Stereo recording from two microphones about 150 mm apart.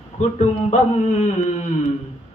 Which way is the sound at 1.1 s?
55° left (ahead or behind).